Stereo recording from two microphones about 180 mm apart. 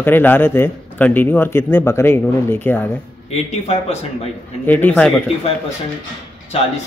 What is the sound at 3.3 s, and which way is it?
Speech, 35° left (ahead or behind).